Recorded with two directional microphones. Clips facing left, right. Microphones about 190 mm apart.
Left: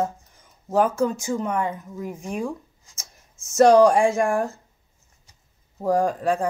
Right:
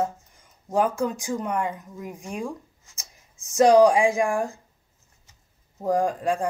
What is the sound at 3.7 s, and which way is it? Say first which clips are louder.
Speech: left 1 dB; 15° right (ahead or behind).